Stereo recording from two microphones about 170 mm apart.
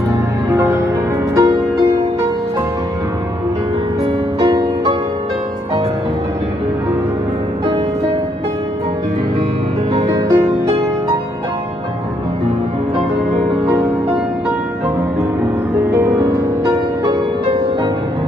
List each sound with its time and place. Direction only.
0.1 s music: 15° right (ahead or behind)
4.4 s music: 25° right (ahead or behind)
10.0 s music: 25° right (ahead or behind)
15.9 s music: 20° right (ahead or behind)